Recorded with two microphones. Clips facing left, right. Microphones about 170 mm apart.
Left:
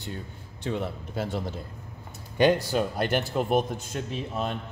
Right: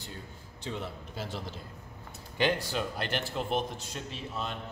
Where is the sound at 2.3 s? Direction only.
45° left (ahead or behind).